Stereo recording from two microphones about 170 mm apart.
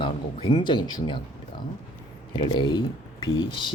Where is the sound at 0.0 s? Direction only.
30° left (ahead or behind).